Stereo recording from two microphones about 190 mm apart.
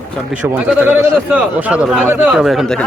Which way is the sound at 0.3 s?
10° right (ahead or behind).